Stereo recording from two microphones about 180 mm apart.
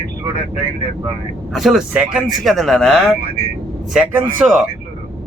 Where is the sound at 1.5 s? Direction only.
Centre (ahead or behind).